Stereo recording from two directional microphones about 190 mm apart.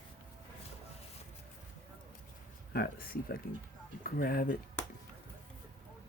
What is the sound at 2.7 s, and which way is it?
Speech, 50° left (ahead or behind).